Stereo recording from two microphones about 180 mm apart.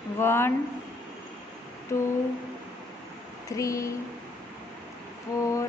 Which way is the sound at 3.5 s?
15° left (ahead or behind).